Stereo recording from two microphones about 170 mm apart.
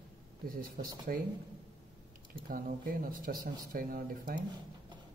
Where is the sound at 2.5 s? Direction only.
55° right (ahead or behind).